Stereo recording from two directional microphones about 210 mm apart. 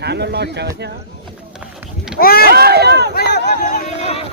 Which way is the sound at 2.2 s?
45° left (ahead or behind).